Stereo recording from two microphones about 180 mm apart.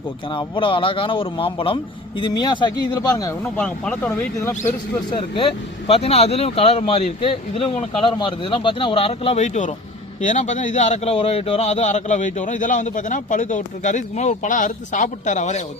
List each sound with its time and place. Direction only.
0.3 s a man's voice: 25° left (ahead or behind)
5.1 s a man's voice: 30° left (ahead or behind)